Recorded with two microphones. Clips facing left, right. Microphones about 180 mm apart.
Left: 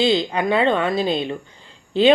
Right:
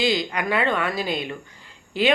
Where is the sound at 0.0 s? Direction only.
25° left (ahead or behind).